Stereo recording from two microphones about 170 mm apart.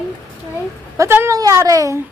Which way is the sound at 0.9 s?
15° right (ahead or behind).